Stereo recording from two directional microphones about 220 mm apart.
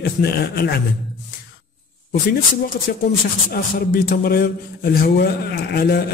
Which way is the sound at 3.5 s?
45° left (ahead or behind).